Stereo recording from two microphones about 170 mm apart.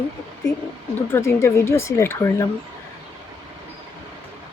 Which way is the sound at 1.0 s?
15° left (ahead or behind).